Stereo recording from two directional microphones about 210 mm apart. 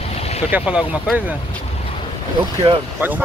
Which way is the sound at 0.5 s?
5° right (ahead or behind).